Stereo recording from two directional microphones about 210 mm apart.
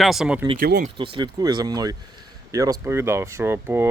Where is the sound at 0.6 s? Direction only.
45° right (ahead or behind).